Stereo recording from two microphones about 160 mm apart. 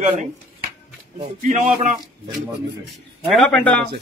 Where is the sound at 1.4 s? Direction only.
55° right (ahead or behind).